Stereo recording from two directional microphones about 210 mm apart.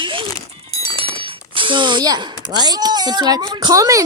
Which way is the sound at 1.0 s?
25° right (ahead or behind).